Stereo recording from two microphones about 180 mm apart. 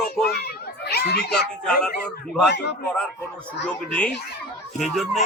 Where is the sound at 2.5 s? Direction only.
70° left (ahead or behind).